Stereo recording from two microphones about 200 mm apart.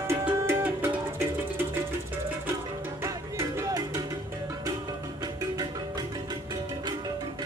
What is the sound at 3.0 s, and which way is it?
Music, 15° right (ahead or behind).